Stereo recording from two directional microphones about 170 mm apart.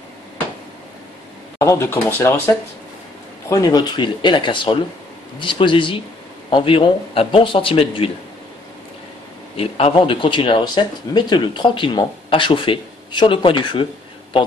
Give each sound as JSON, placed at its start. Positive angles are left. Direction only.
{"t": 1.6, "sound": "speech", "side_deg": 15}
{"t": 9.6, "sound": "speech", "side_deg": 35}